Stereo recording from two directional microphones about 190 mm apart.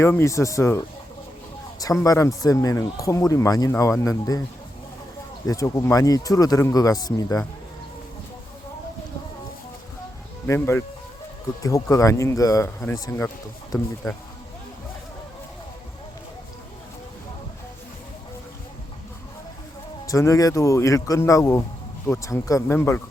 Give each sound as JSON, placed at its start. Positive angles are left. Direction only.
{"t": 0.0, "sound": "speech", "side_deg": 15}
{"t": 2.0, "sound": "speech", "side_deg": 15}
{"t": 5.5, "sound": "speech", "side_deg": 15}
{"t": 10.4, "sound": "speech", "side_deg": 10}
{"t": 20.1, "sound": "speech", "side_deg": 15}